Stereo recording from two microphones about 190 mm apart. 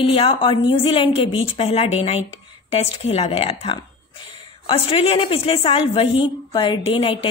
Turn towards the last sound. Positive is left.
turn(degrees=30)  # may be behind; listen again after turning